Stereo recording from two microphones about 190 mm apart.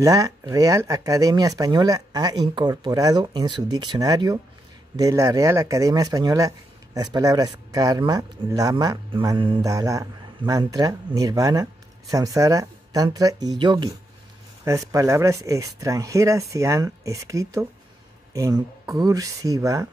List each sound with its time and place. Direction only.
0.0 s speech: 20° right (ahead or behind)